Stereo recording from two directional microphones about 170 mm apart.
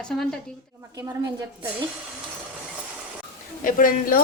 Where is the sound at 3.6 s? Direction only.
55° left (ahead or behind).